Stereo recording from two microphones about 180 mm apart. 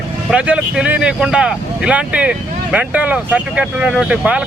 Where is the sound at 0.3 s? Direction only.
5° right (ahead or behind).